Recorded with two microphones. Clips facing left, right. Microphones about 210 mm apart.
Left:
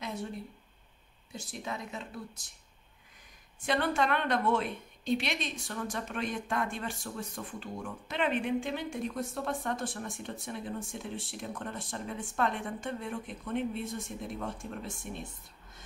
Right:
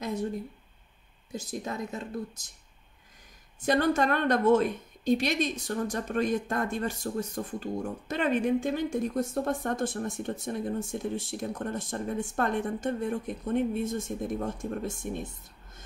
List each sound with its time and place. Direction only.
0.0 s a sound: 40° right (ahead or behind)
1.3 s a woman's voice: 40° right (ahead or behind)
3.6 s a woman's voice: 40° right (ahead or behind)